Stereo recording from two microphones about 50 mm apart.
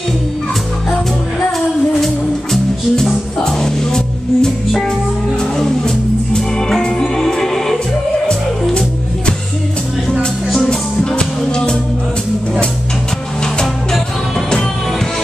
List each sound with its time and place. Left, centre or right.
2.5 s music: centre
10.7 s music: centre